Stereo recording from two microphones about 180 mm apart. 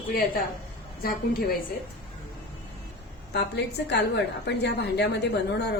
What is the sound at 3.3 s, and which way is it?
A woman's voice, 70° left (ahead or behind).